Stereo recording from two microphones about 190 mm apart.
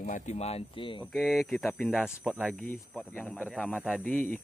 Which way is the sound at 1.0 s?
5° left (ahead or behind).